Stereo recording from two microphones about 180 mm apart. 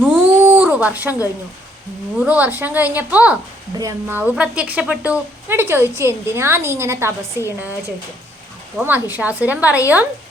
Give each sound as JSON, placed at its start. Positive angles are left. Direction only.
{"t": 0.0, "sound": "a sound", "side_deg": -10}
{"t": 2.1, "sound": "a woman's voice", "side_deg": -10}
{"t": 4.2, "sound": "a woman's voice", "side_deg": -5}
{"t": 7.4, "sound": "a woman's voice", "side_deg": 15}
{"t": 8.8, "sound": "a woman's voice", "side_deg": -10}